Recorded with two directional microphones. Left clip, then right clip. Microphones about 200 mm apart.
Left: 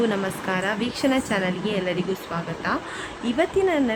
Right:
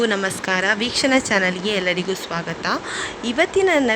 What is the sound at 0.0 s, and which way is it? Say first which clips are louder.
A woman's voice: right 4 dB; 30° right (ahead or behind).